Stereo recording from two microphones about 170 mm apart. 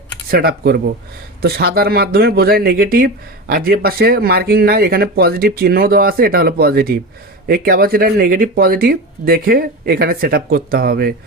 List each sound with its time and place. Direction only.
0.3 s speech: 60° right (ahead or behind)